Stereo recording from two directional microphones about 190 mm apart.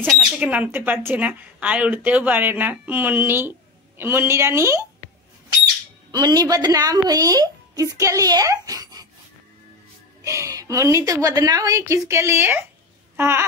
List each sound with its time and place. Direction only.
0.0 s speech: centre (ahead or behind)
6.1 s a woman's voice: 20° right (ahead or behind)
10.2 s speech: 15° right (ahead or behind)
13.1 s babbling: 10° right (ahead or behind)